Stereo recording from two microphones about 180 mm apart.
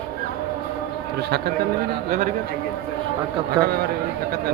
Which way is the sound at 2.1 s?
45° right (ahead or behind).